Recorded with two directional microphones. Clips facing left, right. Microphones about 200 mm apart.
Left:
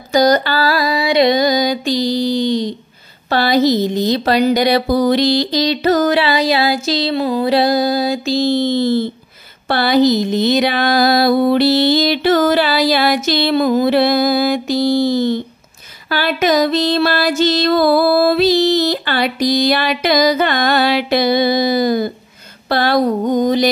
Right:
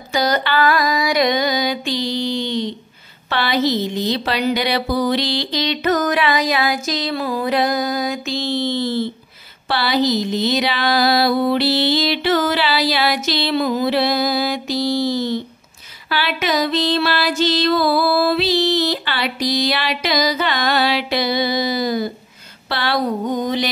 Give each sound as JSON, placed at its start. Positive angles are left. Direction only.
{"t": 0.1, "sound": "speech", "side_deg": 40}
{"t": 9.7, "sound": "music", "side_deg": 50}